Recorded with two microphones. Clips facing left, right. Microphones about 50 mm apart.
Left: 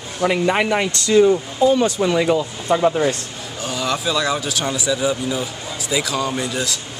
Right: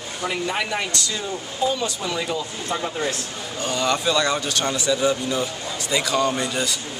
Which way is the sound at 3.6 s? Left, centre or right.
Centre.